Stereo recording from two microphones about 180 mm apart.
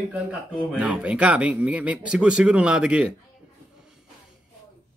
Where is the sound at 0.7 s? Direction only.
5° right (ahead or behind).